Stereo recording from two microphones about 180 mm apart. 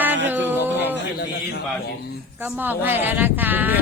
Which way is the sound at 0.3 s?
10° right (ahead or behind).